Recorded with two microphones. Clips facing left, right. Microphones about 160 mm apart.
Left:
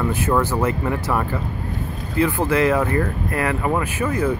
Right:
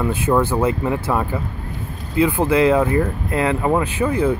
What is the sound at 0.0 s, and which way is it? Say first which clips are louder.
Speech: right 2 dB; 10° right (ahead or behind).